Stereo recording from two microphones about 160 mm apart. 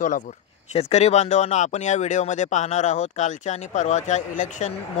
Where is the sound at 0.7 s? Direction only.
40° left (ahead or behind).